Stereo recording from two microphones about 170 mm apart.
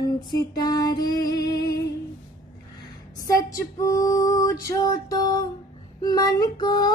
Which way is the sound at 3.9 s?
20° left (ahead or behind).